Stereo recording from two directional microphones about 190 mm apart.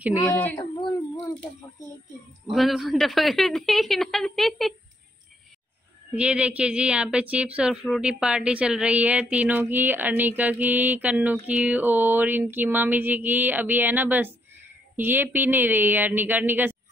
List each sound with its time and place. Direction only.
0.6 s speech: 20° left (ahead or behind)
2.5 s a woman's voice: centre (ahead or behind)
6.1 s speech: 5° right (ahead or behind)